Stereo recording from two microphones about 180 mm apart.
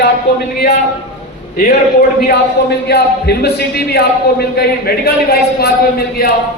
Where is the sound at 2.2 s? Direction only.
65° left (ahead or behind).